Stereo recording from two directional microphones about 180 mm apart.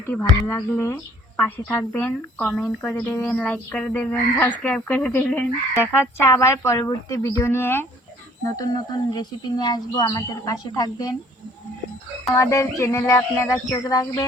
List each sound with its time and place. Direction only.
0.2 s speech: 10° left (ahead or behind)
12.3 s speech: 15° left (ahead or behind)